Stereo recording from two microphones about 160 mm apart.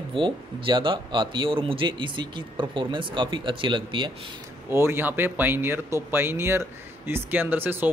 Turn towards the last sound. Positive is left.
turn(degrees=-15)  # may be behind; listen again after turning